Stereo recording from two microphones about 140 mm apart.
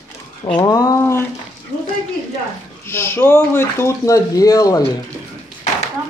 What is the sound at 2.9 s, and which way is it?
Speech, 15° left (ahead or behind).